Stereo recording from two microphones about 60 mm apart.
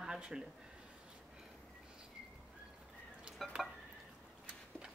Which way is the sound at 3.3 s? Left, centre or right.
Centre.